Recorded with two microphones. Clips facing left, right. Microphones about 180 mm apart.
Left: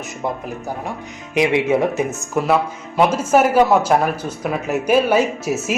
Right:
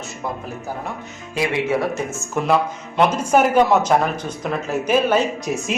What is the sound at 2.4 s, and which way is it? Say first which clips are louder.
A man's voice: left 1 dB; 5° left (ahead or behind).